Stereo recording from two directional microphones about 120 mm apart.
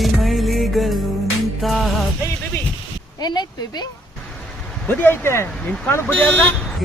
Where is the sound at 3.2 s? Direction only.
35° left (ahead or behind).